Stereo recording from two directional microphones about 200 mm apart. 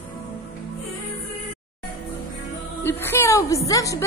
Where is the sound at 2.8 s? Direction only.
10° left (ahead or behind).